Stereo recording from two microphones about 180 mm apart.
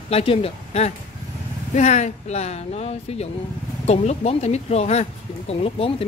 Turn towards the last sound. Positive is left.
turn(degrees=30)  # may be behind; listen again after turning